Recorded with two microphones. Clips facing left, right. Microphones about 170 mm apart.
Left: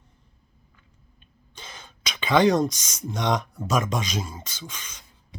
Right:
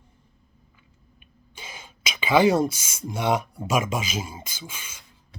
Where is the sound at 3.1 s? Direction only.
10° right (ahead or behind).